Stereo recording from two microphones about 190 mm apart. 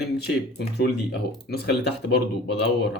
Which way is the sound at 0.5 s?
60° left (ahead or behind).